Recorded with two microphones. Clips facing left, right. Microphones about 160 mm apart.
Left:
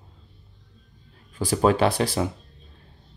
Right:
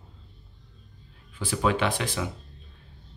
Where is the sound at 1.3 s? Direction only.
40° left (ahead or behind).